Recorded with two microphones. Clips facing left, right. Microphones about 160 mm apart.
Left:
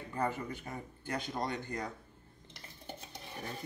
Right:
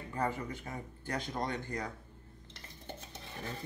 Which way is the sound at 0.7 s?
Centre (ahead or behind).